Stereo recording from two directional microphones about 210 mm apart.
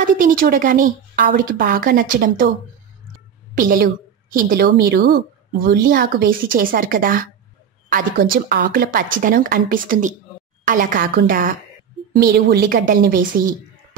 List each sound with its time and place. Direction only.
0.0 s a woman's voice: 40° right (ahead or behind)
3.5 s a woman's voice: 40° right (ahead or behind)